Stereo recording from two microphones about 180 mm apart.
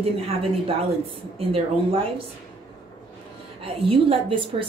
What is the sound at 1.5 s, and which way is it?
Speech, 30° right (ahead or behind).